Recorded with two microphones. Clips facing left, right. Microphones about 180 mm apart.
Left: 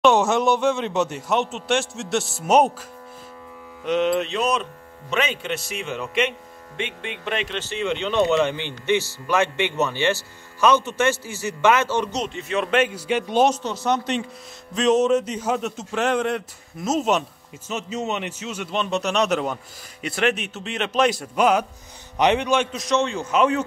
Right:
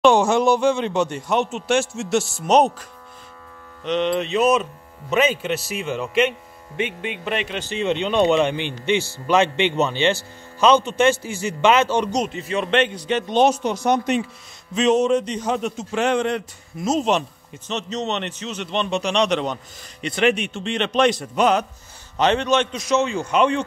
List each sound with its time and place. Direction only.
0.0 s a man's voice: centre (ahead or behind)
3.8 s a man's voice: 5° left (ahead or behind)
7.6 s speech: 20° right (ahead or behind)
12.4 s speech: centre (ahead or behind)
13.5 s speech: 15° right (ahead or behind)
14.7 s a man's voice: centre (ahead or behind)